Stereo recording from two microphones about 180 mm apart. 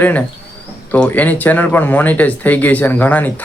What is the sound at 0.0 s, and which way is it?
Speech, 10° left (ahead or behind).